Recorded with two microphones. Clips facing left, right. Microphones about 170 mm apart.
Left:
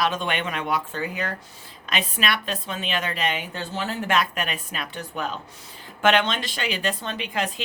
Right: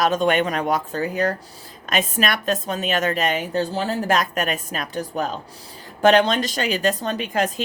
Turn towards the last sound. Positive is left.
turn(degrees=-45)  # may be behind; listen again after turning